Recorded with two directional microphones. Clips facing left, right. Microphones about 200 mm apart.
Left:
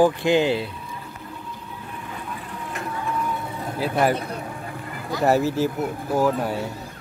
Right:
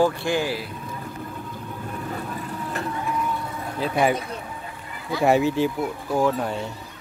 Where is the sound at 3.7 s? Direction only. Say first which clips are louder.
Even; 5° left (ahead or behind).